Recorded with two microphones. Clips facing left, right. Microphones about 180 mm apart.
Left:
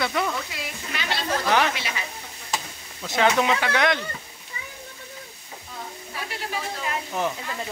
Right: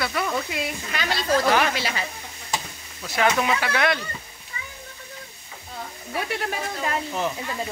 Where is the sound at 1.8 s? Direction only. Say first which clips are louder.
Right 4 dB; 35° right (ahead or behind).